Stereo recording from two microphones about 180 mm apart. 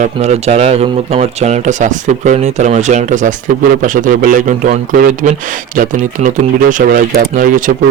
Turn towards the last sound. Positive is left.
turn(degrees=-50)  # may be behind; listen again after turning